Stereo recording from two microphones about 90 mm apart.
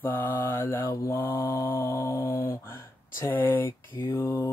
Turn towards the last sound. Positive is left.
turn(degrees=25)  # may be behind; listen again after turning